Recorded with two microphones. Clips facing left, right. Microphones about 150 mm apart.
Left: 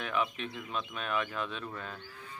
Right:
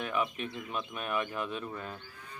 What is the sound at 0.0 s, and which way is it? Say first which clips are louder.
Speech: right 1 dB; 10° right (ahead or behind).